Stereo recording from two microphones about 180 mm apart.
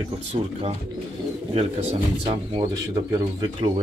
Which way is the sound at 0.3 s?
30° right (ahead or behind).